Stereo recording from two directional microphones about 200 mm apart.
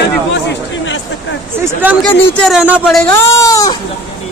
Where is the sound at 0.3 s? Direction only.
65° left (ahead or behind).